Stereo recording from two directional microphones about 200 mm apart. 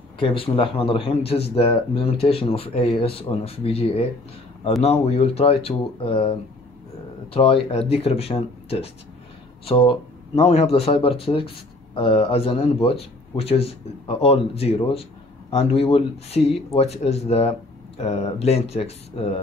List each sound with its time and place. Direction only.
0.2 s speech: 25° left (ahead or behind)
7.3 s speech: 25° left (ahead or behind)